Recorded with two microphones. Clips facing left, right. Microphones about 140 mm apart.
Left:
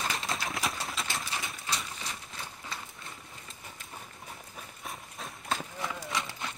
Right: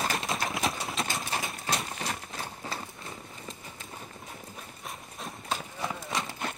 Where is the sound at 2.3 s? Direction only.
35° right (ahead or behind).